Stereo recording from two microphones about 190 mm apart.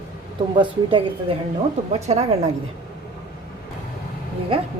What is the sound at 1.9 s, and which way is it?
Speech, 35° right (ahead or behind).